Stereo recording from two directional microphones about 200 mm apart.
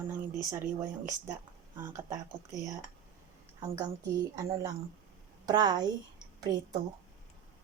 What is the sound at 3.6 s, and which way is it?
A woman's voice, 15° right (ahead or behind).